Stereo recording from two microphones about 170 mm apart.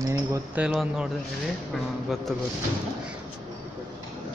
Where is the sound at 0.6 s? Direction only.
5° right (ahead or behind).